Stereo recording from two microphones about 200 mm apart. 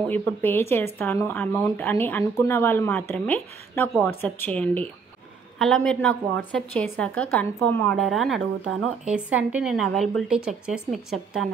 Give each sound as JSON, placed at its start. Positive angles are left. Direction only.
{"t": 0.0, "sound": "speech", "side_deg": 10}
{"t": 7.9, "sound": "speech", "side_deg": 0}
{"t": 8.4, "sound": "speech", "side_deg": -90}
{"t": 9.0, "sound": "speech", "side_deg": -5}